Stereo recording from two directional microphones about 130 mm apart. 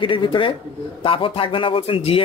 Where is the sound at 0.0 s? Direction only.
40° left (ahead or behind).